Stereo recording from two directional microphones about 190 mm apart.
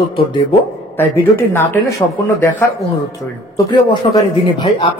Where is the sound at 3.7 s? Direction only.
25° left (ahead or behind).